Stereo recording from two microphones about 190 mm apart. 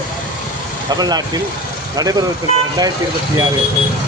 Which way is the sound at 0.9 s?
20° right (ahead or behind).